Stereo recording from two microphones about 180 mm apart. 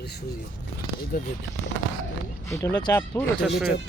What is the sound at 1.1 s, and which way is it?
Speech, 55° left (ahead or behind).